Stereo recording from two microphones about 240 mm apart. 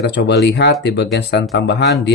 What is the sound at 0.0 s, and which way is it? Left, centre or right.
Speech, left.